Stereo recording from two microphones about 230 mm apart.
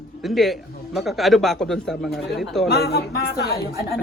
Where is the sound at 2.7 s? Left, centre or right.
Left.